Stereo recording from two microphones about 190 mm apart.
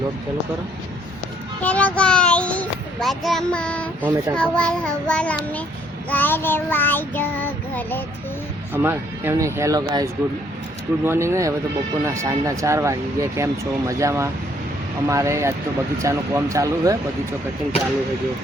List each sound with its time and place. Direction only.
1.6 s a child's voice: 5° left (ahead or behind)
4.0 s speech: 10° right (ahead or behind)
4.4 s child singing: 5° left (ahead or behind)
8.7 s speech: 10° right (ahead or behind)